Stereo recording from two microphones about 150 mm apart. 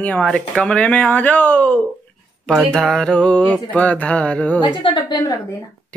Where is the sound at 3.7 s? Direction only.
10° left (ahead or behind).